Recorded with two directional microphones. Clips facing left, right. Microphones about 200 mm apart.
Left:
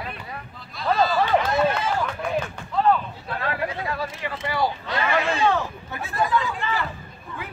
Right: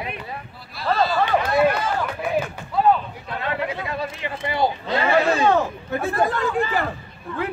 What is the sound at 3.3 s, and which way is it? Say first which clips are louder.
Speech: right 2 dB; 25° right (ahead or behind).